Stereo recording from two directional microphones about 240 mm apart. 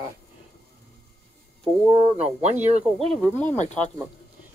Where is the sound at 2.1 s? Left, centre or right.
Right.